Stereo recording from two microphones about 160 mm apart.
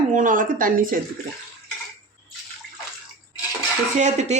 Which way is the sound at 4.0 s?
45° right (ahead or behind).